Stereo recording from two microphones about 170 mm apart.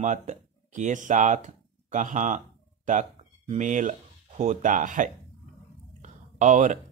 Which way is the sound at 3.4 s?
45° right (ahead or behind).